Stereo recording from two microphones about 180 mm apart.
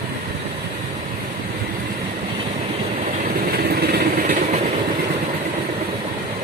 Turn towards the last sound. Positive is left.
turn(degrees=-45)  # may be behind; listen again after turning